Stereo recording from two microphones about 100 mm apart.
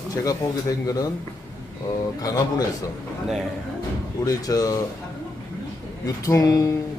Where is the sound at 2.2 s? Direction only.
40° left (ahead or behind).